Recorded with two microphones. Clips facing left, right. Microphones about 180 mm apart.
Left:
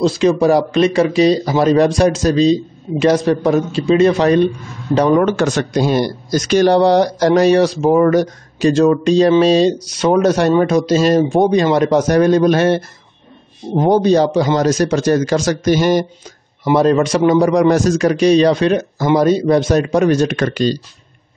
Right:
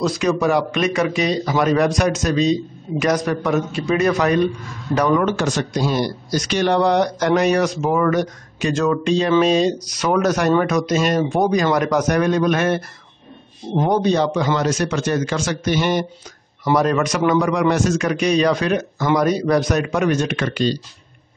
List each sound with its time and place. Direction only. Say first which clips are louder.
0.0 s speech: left 6 dB; 30° left (ahead or behind)
5.4 s speech: left 5 dB; 60° left (ahead or behind); by 12.8 s 30° left (ahead or behind)
13.8 s speech: left 6 dB; 35° left (ahead or behind)
16.6 s speech: left 5 dB; 25° left (ahead or behind); by 20.8 s 40° left (ahead or behind)